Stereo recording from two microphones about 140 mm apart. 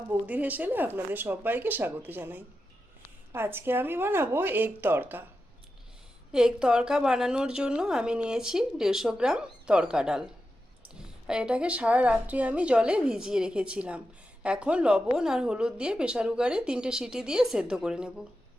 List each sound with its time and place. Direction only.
0.1 s a woman's voice: 10° right (ahead or behind)
6.3 s a woman's voice: 5° right (ahead or behind)